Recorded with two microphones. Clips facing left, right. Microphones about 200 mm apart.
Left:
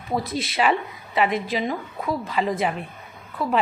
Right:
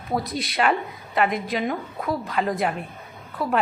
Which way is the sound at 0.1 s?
Centre (ahead or behind).